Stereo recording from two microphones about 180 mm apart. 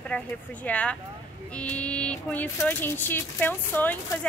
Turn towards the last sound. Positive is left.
turn(degrees=10)  # may be behind; listen again after turning